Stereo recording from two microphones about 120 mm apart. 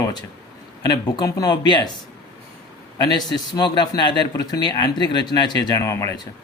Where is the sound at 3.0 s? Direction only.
35° left (ahead or behind).